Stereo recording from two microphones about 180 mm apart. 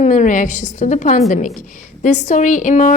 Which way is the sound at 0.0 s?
40° left (ahead or behind).